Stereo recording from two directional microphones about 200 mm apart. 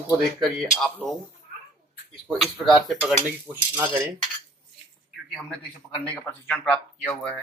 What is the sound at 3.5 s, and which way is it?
Speech, 15° right (ahead or behind).